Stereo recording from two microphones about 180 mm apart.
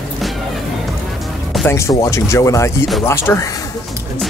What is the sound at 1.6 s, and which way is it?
Speech, 15° left (ahead or behind).